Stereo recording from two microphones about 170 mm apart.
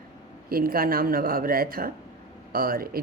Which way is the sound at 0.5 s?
60° right (ahead or behind).